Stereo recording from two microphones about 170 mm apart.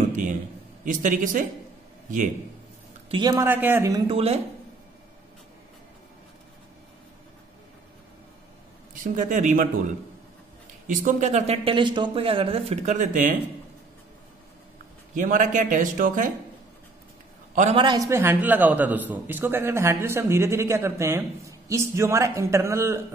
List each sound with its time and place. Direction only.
0.8 s speech: 50° right (ahead or behind)
3.1 s speech: 25° right (ahead or behind)
3.4 s a man's voice: 10° right (ahead or behind)
4.1 s speech: 35° right (ahead or behind)
9.0 s speech: 50° right (ahead or behind)
15.1 s speech: 50° right (ahead or behind)
17.7 s a man's voice: 25° right (ahead or behind)